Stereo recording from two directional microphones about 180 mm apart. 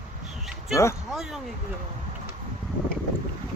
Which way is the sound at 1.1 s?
5° right (ahead or behind).